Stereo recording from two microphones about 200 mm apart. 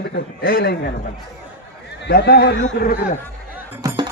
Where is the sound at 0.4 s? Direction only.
50° left (ahead or behind).